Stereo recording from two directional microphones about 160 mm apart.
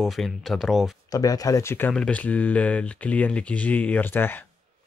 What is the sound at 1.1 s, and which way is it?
Speech, 20° left (ahead or behind).